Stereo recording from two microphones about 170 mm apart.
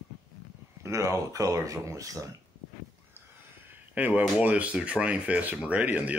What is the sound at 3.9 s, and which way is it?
Speech, 10° right (ahead or behind).